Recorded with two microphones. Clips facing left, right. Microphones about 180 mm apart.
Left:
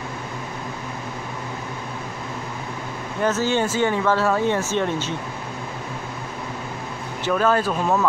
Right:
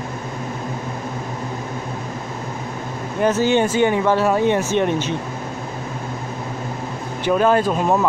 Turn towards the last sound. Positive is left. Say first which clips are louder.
# right 3 dB
turn(degrees=-20)  # may be behind; listen again after turning